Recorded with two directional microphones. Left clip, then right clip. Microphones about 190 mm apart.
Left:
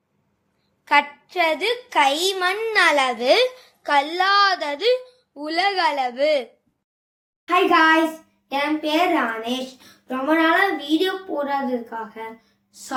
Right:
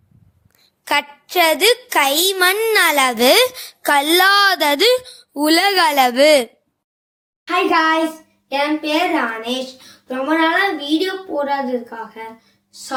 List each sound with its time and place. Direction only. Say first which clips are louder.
0.9 s a child's voice: left 1 dB; 70° right (ahead or behind)
7.4 s speech: right 1 dB; 10° left (ahead or behind)